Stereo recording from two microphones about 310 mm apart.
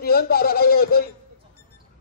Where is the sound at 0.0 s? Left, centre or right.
Left.